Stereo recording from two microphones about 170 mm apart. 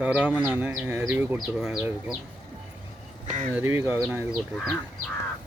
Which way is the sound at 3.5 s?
10° right (ahead or behind).